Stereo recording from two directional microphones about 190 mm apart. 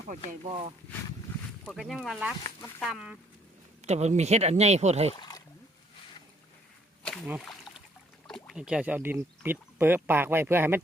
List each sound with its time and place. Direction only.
0.4 s speech: 30° right (ahead or behind)
1.6 s speech: centre (ahead or behind)
3.8 s speech: 35° right (ahead or behind)
5.1 s a sound: 25° left (ahead or behind)
7.4 s a sound: centre (ahead or behind)
8.3 s speech: centre (ahead or behind)